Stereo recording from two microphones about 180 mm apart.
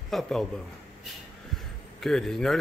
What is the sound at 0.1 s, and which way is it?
Speech, centre (ahead or behind).